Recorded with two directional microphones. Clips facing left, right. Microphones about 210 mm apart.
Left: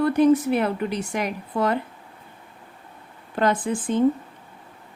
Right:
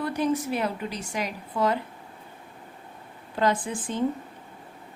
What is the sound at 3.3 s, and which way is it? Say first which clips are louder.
Speech: left 3 dB; 55° left (ahead or behind).